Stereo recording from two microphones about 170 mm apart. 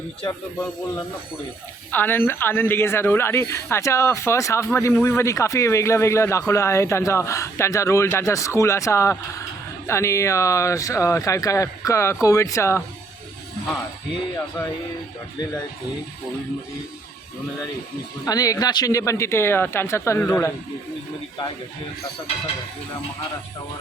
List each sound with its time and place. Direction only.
0.3 s speech: 20° left (ahead or behind)
18.3 s speech: 20° left (ahead or behind)